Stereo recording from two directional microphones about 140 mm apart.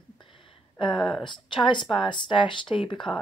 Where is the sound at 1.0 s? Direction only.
Centre (ahead or behind).